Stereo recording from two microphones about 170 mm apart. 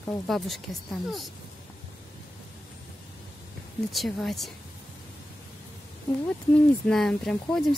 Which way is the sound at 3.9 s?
Centre (ahead or behind).